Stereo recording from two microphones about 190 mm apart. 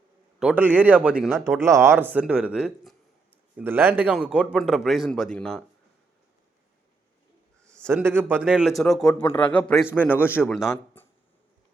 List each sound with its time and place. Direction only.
0.3 s speech: 5° right (ahead or behind)
1.7 s a man's voice: 15° right (ahead or behind); by 5.6 s 5° left (ahead or behind)
7.6 s a sound: 5° left (ahead or behind)
7.9 s a man's voice: 10° right (ahead or behind); by 11.0 s 15° left (ahead or behind)